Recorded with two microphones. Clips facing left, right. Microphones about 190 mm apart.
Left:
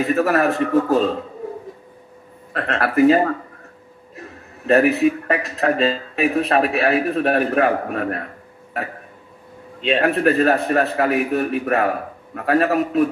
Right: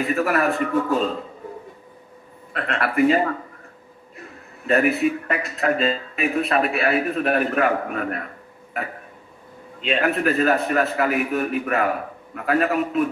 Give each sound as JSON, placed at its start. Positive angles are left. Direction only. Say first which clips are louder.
{"t": 0.0, "sound": "a man's voice", "louder": "left 3 dB", "side_deg": 40}
{"t": 2.5, "sound": "a man's voice", "louder": "left 3 dB", "side_deg": 40}
{"t": 9.8, "sound": "a man's voice", "louder": "left 4 dB", "side_deg": 35}